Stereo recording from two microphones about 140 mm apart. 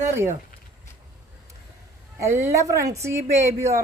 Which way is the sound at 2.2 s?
20° right (ahead or behind).